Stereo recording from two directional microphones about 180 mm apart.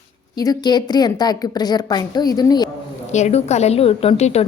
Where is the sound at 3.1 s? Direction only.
40° left (ahead or behind).